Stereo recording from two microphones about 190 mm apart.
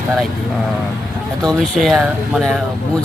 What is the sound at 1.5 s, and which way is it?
Speech, centre (ahead or behind).